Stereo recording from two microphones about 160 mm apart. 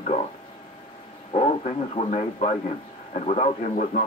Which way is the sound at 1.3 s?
40° left (ahead or behind).